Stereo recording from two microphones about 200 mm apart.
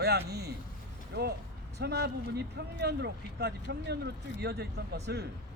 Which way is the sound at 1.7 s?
55° right (ahead or behind).